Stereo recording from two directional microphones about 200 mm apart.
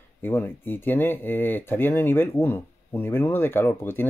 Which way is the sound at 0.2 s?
10° left (ahead or behind).